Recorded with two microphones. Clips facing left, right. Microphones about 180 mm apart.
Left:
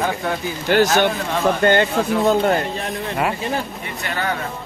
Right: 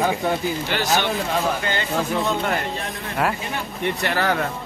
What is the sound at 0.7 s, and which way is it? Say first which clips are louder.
Speech: left 9 dB; 50° left (ahead or behind).